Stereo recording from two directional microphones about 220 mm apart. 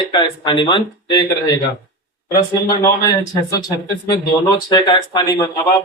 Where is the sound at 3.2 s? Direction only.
15° left (ahead or behind).